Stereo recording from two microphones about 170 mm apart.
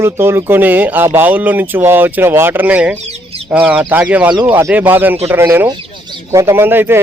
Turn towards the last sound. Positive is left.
turn(degrees=-10)  # may be behind; listen again after turning